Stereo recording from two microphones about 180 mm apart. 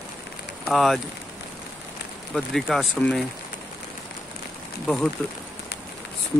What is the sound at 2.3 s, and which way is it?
Speech, centre (ahead or behind).